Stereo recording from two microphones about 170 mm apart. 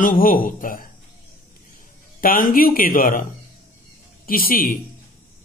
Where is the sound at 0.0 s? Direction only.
55° left (ahead or behind).